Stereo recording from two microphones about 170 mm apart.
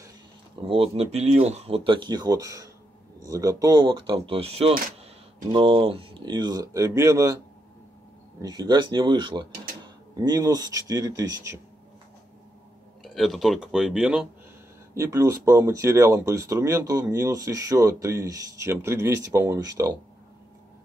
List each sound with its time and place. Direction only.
0.7 s speech: 35° right (ahead or behind); by 7.3 s 15° right (ahead or behind)
8.4 s speech: 25° right (ahead or behind)
13.0 s speech: centre (ahead or behind)
15.0 s speech: 20° right (ahead or behind)